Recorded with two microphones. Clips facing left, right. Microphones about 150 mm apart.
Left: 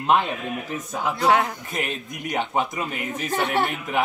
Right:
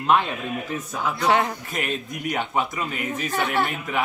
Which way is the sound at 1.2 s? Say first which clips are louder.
Left 1 dB; centre (ahead or behind).